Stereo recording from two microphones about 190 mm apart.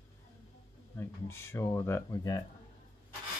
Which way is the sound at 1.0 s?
15° left (ahead or behind).